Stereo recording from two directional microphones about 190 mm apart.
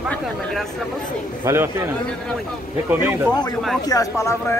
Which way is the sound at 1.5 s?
15° right (ahead or behind).